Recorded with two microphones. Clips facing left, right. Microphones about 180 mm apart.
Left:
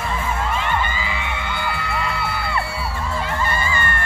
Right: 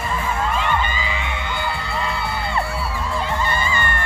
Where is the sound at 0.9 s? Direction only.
20° right (ahead or behind).